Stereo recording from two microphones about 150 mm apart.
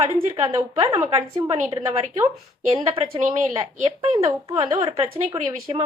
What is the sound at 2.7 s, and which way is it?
Speech, 40° right (ahead or behind).